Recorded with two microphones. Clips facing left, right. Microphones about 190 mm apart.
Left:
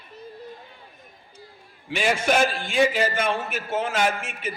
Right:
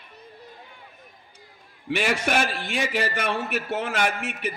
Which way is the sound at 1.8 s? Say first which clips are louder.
Left 2 dB; 65° right (ahead or behind).